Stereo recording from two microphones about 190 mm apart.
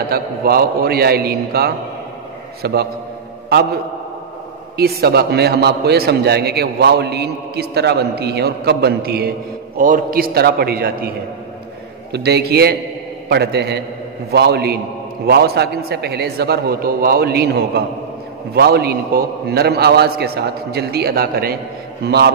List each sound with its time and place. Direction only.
0.1 s a man's voice: 50° right (ahead or behind)
4.7 s a man's voice: 55° right (ahead or behind)